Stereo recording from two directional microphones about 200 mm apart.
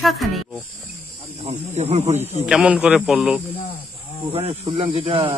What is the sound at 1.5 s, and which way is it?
Speech, 30° right (ahead or behind).